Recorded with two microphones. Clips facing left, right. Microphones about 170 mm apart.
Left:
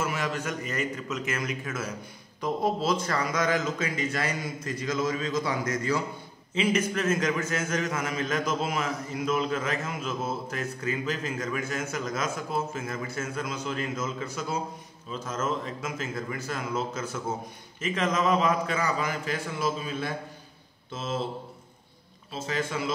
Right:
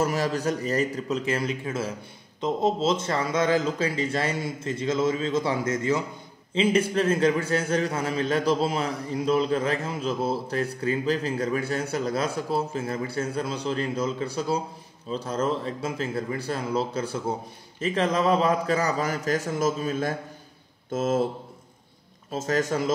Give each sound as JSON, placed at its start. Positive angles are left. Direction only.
{"t": 0.0, "sound": "a man's voice", "side_deg": -35}
{"t": 22.3, "sound": "speech", "side_deg": -45}